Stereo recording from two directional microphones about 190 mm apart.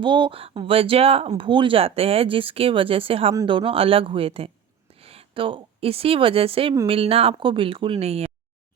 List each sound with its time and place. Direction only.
0.0 s a woman's voice: 25° right (ahead or behind)